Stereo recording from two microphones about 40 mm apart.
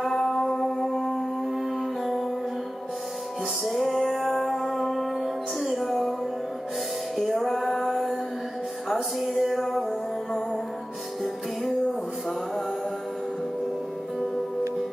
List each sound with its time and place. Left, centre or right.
0.0 s music: centre
3.6 s music: centre
7.2 s music: centre
7.4 s a sound: centre
8.8 s music: centre